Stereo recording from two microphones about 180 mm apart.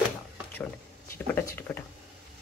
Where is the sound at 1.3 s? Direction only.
10° left (ahead or behind).